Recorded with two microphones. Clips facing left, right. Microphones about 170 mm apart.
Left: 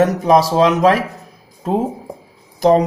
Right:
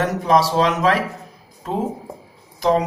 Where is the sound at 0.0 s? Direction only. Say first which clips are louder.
Left 5 dB; 45° left (ahead or behind).